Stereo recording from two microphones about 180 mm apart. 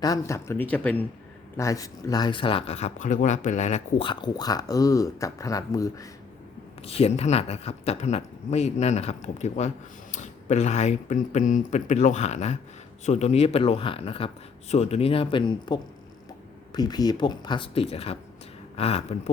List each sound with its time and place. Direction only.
0.0 s speech: 20° left (ahead or behind)
6.8 s speech: 35° left (ahead or behind)